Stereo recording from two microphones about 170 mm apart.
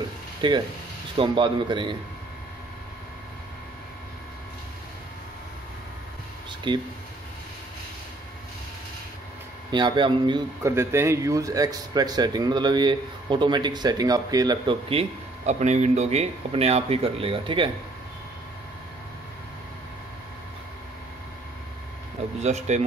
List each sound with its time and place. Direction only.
0.4 s speech: 30° right (ahead or behind)
6.7 s speech: 30° right (ahead or behind)
9.7 s speech: 25° right (ahead or behind)
10.6 s speech: 15° right (ahead or behind); by 17.6 s 30° right (ahead or behind)
22.4 s speech: 40° right (ahead or behind)